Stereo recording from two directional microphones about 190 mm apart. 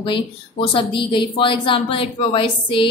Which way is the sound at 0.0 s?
25° left (ahead or behind).